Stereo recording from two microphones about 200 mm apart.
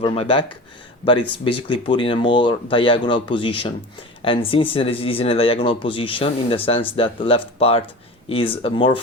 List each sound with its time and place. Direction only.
0.0 s speech: 25° left (ahead or behind)